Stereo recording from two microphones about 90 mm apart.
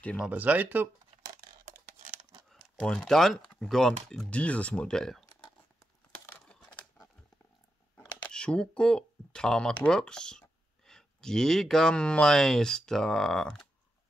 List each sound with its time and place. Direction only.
0.3 s speech: 20° right (ahead or behind)
2.8 s speech: 10° left (ahead or behind)
6.4 s crumpling: 10° left (ahead or behind)
8.2 s speech: 10° left (ahead or behind)